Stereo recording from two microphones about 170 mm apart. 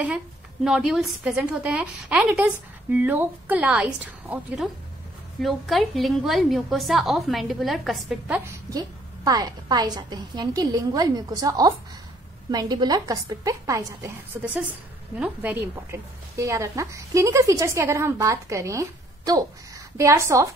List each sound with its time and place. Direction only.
0.7 s a woman's voice: 5° right (ahead or behind)
8.5 s a woman's voice: 20° right (ahead or behind)